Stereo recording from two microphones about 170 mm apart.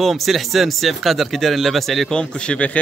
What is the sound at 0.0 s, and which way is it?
Speech, centre (ahead or behind).